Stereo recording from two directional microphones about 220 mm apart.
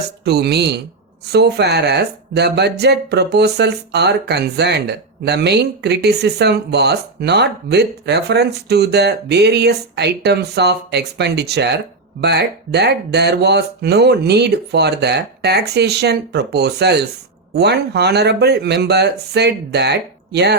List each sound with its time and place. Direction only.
0.3 s speech: 45° right (ahead or behind)